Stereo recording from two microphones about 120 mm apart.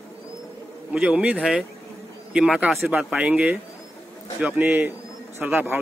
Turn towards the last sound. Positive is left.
turn(degrees=-15)  # may be behind; listen again after turning